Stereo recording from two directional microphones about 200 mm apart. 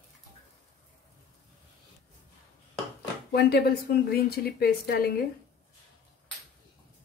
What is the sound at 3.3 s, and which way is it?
A woman's voice, 50° left (ahead or behind).